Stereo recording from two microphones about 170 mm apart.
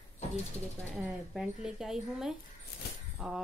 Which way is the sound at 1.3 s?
5° right (ahead or behind).